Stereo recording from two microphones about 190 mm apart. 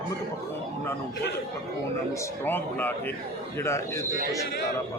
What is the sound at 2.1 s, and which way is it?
A man's voice, 15° left (ahead or behind).